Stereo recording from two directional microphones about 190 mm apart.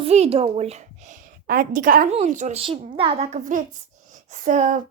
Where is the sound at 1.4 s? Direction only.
45° right (ahead or behind).